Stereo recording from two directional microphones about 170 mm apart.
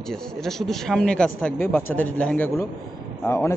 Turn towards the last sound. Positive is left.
turn(degrees=15)  # may be behind; listen again after turning